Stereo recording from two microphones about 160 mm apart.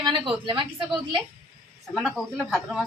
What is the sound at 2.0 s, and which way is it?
Speech, centre (ahead or behind).